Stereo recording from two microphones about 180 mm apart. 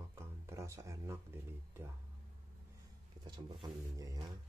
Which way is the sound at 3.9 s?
20° right (ahead or behind).